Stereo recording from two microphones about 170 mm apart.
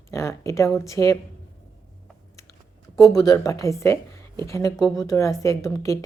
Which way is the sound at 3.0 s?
20° left (ahead or behind).